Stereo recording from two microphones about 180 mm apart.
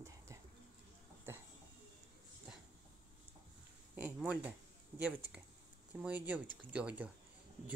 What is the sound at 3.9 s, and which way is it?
Speech, 10° right (ahead or behind).